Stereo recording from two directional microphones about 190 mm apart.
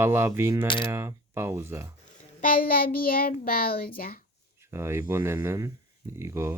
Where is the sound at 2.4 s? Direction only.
45° left (ahead or behind).